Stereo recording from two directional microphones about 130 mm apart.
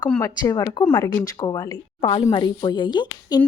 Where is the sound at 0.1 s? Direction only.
20° left (ahead or behind).